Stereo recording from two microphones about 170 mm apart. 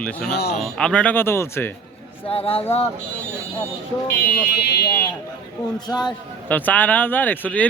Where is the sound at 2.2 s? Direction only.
35° left (ahead or behind).